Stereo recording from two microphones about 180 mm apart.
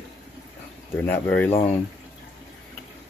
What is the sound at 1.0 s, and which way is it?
Speech, 10° left (ahead or behind).